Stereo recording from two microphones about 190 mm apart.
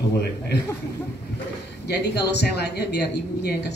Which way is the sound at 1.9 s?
60° left (ahead or behind).